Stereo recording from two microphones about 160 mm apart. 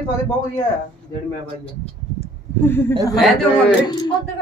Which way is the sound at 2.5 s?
15° left (ahead or behind).